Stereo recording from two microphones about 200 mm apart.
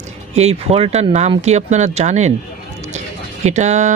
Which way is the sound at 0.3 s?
30° right (ahead or behind).